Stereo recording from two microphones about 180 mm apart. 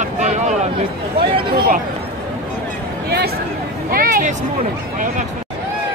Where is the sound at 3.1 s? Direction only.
60° right (ahead or behind).